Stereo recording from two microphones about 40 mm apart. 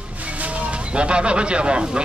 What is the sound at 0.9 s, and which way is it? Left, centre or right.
A man's voice, right.